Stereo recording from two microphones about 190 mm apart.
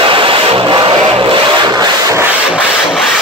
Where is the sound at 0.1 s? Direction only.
30° right (ahead or behind).